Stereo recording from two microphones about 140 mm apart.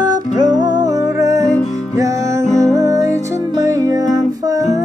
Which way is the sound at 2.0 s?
25° right (ahead or behind).